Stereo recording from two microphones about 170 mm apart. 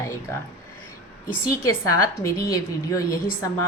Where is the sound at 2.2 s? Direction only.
20° left (ahead or behind).